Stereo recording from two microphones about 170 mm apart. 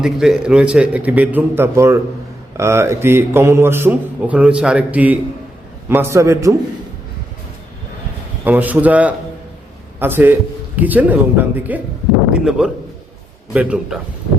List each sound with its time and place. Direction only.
0.0 s a man's voice: 5° right (ahead or behind)
8.4 s a man's voice: 10° right (ahead or behind)